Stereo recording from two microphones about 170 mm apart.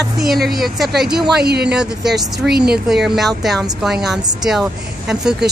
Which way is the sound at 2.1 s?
70° right (ahead or behind).